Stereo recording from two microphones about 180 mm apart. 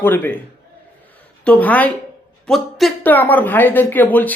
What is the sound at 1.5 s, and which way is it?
Speech, 10° left (ahead or behind).